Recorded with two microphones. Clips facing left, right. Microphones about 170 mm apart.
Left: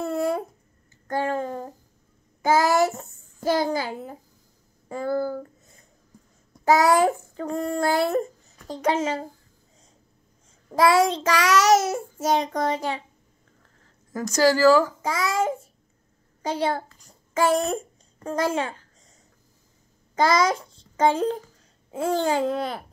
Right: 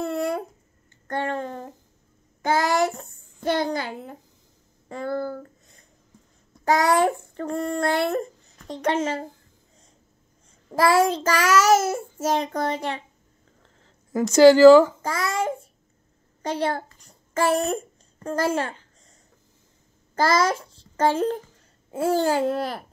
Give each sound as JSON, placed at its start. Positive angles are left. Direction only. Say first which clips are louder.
{"t": 0.0, "sound": "a sound", "louder": "left 1 dB", "side_deg": 5}
{"t": 3.4, "sound": "child singing", "louder": "left 1 dB", "side_deg": 5}
{"t": 4.8, "sound": "speech", "louder": "left 2 dB", "side_deg": 10}
{"t": 6.6, "sound": "child singing", "louder": "left 1 dB", "side_deg": 5}
{"t": 10.7, "sound": "child singing", "louder": "even", "side_deg": 0}
{"t": 13.6, "sound": "a sound", "louder": "right 2 dB", "side_deg": -25}
{"t": 15.0, "sound": "child singing", "louder": "left 1 dB", "side_deg": 0}
{"t": 16.4, "sound": "a child's voice", "louder": "even", "side_deg": 0}
{"t": 18.2, "sound": "child singing", "louder": "right 1 dB", "side_deg": 0}
{"t": 20.2, "sound": "a child's voice", "louder": "even", "side_deg": 0}
{"t": 21.9, "sound": "child singing", "louder": "right 2 dB", "side_deg": -5}